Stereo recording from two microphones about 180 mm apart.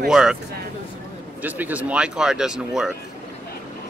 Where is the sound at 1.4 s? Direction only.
10° right (ahead or behind).